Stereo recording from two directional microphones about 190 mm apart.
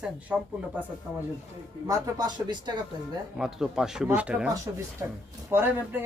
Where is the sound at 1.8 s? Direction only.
20° right (ahead or behind).